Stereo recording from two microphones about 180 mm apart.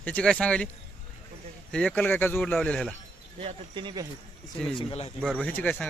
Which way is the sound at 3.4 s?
25° right (ahead or behind).